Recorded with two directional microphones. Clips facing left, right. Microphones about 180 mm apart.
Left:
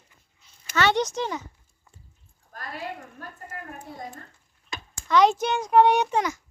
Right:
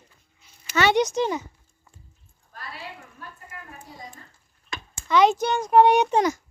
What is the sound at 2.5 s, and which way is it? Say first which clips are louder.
A woman's voice: left 4 dB; 45° left (ahead or behind).